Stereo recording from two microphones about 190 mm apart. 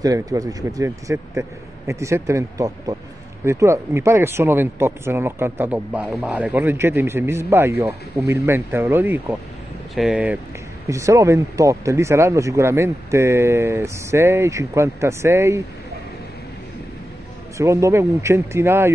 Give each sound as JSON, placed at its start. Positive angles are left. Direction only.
{"t": 0.0, "sound": "speech", "side_deg": -20}
{"t": 17.6, "sound": "speech", "side_deg": -15}